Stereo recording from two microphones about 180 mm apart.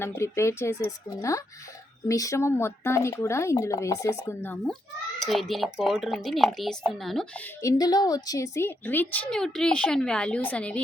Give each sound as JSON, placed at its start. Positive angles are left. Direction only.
{"t": 0.0, "sound": "a woman's voice", "side_deg": 15}
{"t": 5.2, "sound": "a woman's voice", "side_deg": 0}
{"t": 7.6, "sound": "a woman's voice", "side_deg": 20}